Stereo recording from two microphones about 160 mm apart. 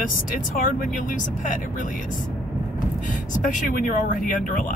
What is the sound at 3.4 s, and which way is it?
Speech, 55° left (ahead or behind).